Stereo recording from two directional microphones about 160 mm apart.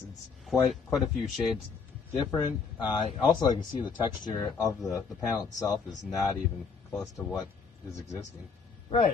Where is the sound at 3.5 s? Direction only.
30° left (ahead or behind).